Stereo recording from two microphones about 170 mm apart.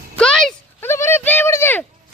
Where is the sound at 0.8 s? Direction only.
15° left (ahead or behind).